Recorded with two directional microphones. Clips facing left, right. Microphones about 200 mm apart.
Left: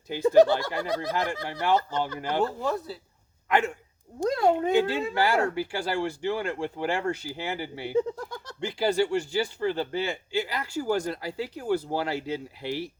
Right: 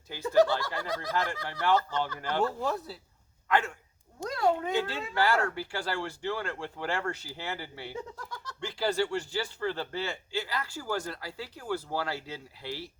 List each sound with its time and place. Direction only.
0.1 s speech: 20° left (ahead or behind)
2.6 s speech: 5° right (ahead or behind)
3.5 s speech: 15° left (ahead or behind)